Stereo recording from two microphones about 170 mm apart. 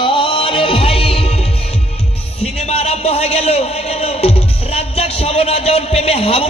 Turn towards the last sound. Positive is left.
turn(degrees=35)  # may be behind; listen again after turning